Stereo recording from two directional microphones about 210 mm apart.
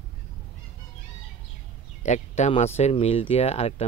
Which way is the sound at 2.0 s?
35° left (ahead or behind).